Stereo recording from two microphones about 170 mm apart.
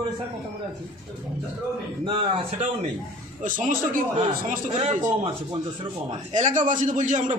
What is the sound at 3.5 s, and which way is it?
Speech, 50° right (ahead or behind).